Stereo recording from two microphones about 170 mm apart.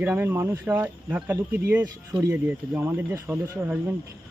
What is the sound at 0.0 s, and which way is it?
A man's voice, 15° right (ahead or behind).